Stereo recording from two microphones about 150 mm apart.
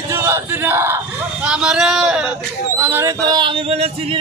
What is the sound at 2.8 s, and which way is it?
Speech, 15° right (ahead or behind).